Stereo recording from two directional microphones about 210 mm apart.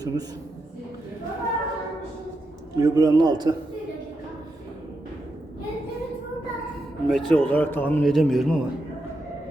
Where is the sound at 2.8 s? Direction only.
20° right (ahead or behind).